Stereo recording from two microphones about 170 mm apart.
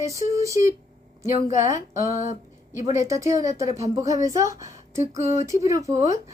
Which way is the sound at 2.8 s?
20° right (ahead or behind).